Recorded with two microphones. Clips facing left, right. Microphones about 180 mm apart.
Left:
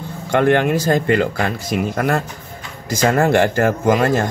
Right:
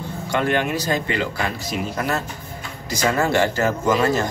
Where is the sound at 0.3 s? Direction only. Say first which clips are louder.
Left 6 dB; 55° left (ahead or behind).